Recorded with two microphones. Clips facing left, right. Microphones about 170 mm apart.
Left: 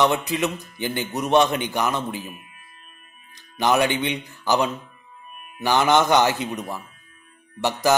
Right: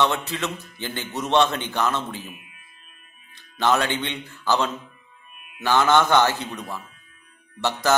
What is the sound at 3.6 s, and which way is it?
Speech, 15° left (ahead or behind).